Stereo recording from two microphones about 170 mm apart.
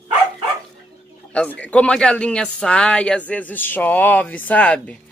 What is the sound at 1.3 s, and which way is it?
Speech, 5° left (ahead or behind).